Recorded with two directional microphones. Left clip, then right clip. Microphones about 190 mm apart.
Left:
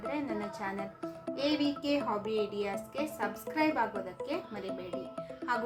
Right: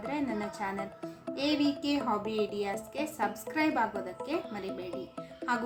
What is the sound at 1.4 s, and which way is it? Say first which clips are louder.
A woman's voice: right 2 dB; 20° right (ahead or behind).